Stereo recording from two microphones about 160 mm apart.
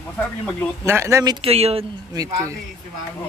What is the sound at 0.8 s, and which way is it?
Speech, 15° right (ahead or behind).